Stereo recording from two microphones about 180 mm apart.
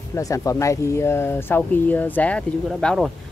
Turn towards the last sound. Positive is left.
turn(degrees=0)  # may be behind; listen again after turning